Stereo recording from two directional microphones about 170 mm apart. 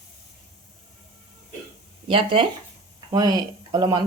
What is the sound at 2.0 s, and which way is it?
Speech, 30° right (ahead or behind).